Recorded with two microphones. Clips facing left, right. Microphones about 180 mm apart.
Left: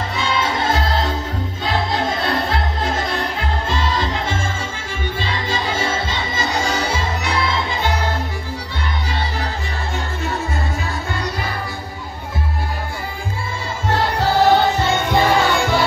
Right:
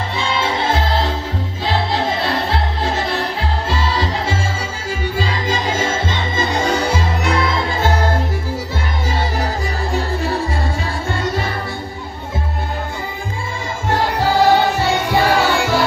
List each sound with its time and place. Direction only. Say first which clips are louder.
0.2 s music: right 1 dB; 30° right (ahead or behind); by 6.9 s 55° right (ahead or behind)
9.9 s music: right 5 dB; 35° right (ahead or behind)
13.8 s music: right 1 dB; 10° right (ahead or behind)